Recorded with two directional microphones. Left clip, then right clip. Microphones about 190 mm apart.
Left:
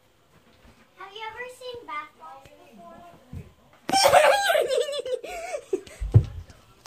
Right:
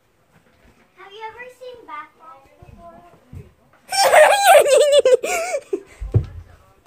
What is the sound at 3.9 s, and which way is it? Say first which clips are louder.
Giggle: right 5 dB; 60° right (ahead or behind).